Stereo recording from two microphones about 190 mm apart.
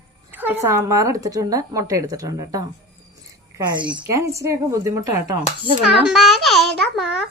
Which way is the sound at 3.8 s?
5° right (ahead or behind).